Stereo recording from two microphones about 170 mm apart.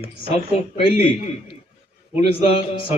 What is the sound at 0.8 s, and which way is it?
Speech, 35° left (ahead or behind).